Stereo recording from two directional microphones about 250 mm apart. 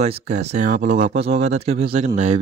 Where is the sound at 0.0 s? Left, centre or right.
Right.